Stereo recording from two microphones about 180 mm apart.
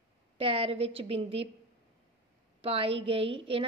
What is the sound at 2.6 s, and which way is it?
A woman's voice, 30° right (ahead or behind).